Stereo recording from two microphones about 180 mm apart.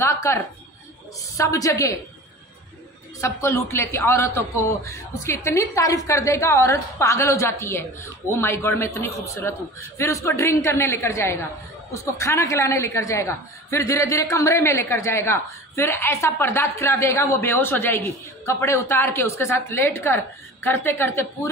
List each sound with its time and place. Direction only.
0.0 s a sound: 15° left (ahead or behind)
1.3 s a woman's voice: 15° left (ahead or behind)
3.2 s a woman's voice: 15° left (ahead or behind)